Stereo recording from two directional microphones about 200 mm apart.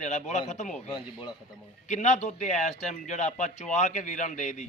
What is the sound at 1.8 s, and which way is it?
Speech, 35° left (ahead or behind).